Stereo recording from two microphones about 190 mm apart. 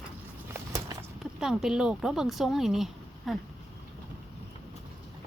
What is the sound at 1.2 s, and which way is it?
Speech, centre (ahead or behind).